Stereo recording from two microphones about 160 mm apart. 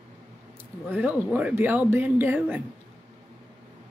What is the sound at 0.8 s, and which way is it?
Speech, 10° right (ahead or behind).